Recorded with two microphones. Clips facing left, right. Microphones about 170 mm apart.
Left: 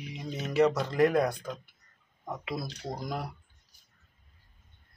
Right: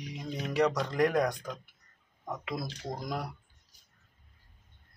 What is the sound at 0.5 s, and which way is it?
Speech, 5° left (ahead or behind).